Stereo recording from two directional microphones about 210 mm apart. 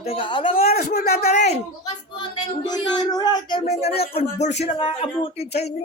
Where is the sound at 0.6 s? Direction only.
45° left (ahead or behind).